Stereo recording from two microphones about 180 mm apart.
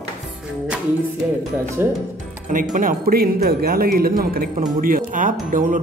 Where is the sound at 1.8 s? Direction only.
10° right (ahead or behind).